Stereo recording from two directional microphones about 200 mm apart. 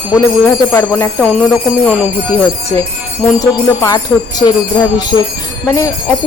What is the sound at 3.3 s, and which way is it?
Speech, 15° left (ahead or behind).